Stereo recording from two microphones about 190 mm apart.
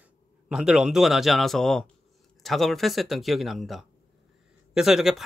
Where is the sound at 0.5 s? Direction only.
5° right (ahead or behind).